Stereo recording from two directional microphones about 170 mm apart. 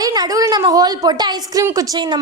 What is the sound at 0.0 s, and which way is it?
A woman's voice, 20° right (ahead or behind).